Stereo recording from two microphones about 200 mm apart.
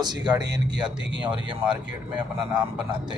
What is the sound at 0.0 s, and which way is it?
Speech, 20° right (ahead or behind).